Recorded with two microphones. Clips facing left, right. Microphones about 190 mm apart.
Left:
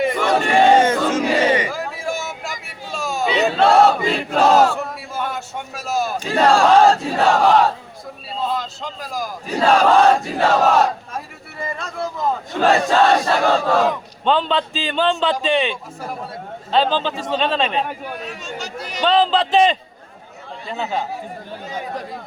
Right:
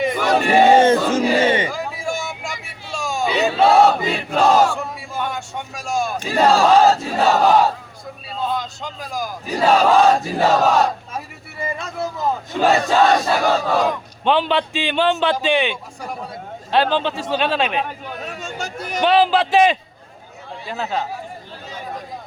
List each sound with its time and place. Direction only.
0.0 s battle cry: centre (ahead or behind)
0.8 s battle cry: 30° right (ahead or behind)
1.7 s vehicle: centre (ahead or behind)
2.9 s battle cry: centre (ahead or behind)
11.6 s speech: 5° right (ahead or behind)
12.6 s battle cry: centre (ahead or behind)
18.3 s a sound: 50° right (ahead or behind)
19.0 s a man's voice: 10° right (ahead or behind)
20.7 s battle cry: centre (ahead or behind)